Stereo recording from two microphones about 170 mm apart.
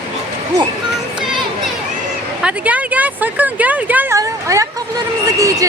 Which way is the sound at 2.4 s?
10° right (ahead or behind).